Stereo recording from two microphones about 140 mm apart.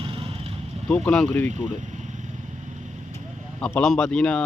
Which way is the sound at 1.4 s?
60° right (ahead or behind).